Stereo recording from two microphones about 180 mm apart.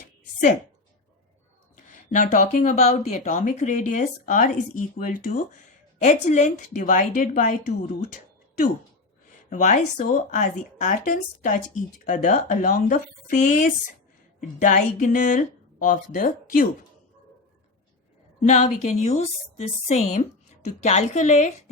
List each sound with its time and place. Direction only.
1.7 s speech: 45° left (ahead or behind)
18.3 s a woman's voice: 40° left (ahead or behind)